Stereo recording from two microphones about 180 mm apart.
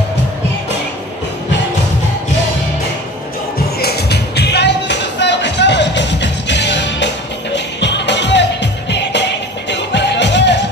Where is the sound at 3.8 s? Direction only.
65° left (ahead or behind).